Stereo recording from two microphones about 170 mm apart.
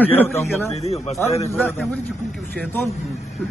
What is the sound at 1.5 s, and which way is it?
Speech, 10° left (ahead or behind).